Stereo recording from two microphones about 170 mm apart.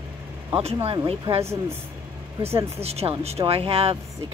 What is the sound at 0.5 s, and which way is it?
Speech, 35° right (ahead or behind).